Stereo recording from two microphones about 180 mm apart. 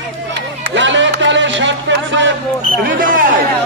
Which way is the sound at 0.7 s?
90° right.